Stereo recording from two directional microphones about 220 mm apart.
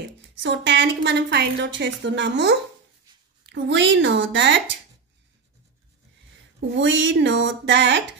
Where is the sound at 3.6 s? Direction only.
55° right (ahead or behind).